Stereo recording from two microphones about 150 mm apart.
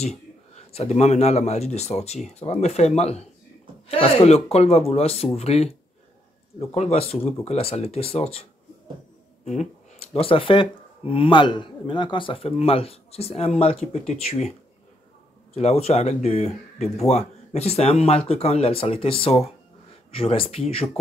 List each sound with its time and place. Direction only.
0.0 s speech: 45° left (ahead or behind)
9.4 s speech: 50° left (ahead or behind)
15.5 s speech: 45° left (ahead or behind)